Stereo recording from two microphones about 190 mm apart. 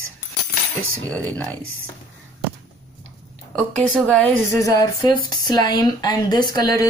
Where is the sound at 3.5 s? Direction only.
5° left (ahead or behind).